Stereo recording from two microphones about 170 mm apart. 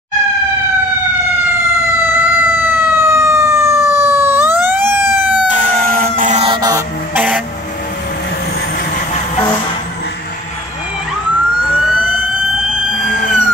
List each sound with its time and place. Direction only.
2.1 s emergency vehicle: 10° right (ahead or behind)
5.5 s fire engine: 55° right (ahead or behind)
6.4 s music: 25° right (ahead or behind)
7.2 s vehicle: 10° right (ahead or behind)
12.9 s a sound: 50° left (ahead or behind)